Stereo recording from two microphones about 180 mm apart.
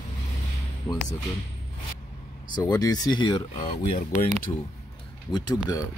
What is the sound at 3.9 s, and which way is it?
Speech, 50° left (ahead or behind).